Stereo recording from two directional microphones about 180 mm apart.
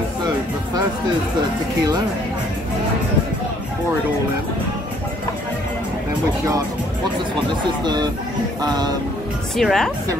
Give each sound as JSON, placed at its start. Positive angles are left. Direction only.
{"t": 7.8, "sound": "speech", "side_deg": -25}
{"t": 9.6, "sound": "speech", "side_deg": 0}